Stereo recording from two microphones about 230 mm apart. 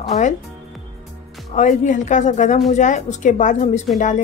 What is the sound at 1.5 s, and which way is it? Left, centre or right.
Speech, left.